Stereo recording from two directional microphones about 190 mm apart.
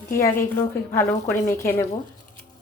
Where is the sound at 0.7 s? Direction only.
15° left (ahead or behind).